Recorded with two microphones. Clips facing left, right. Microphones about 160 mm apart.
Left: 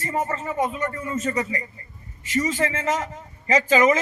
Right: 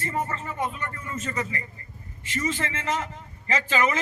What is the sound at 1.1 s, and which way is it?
Speech, 40° left (ahead or behind).